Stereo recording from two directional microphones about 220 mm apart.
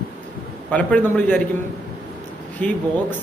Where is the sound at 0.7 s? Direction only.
5° left (ahead or behind).